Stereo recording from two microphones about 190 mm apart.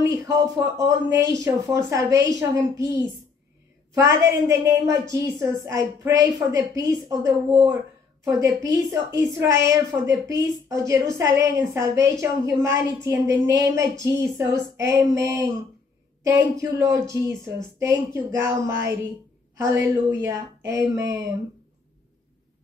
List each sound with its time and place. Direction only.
0.0 s a woman's voice: 20° right (ahead or behind)
16.3 s a woman's voice: 15° right (ahead or behind)